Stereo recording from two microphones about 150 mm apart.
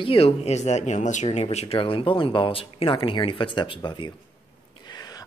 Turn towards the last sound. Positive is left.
turn(degrees=25)  # may be behind; listen again after turning